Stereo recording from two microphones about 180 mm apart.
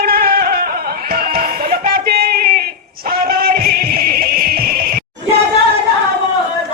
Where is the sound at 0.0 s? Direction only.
55° right (ahead or behind).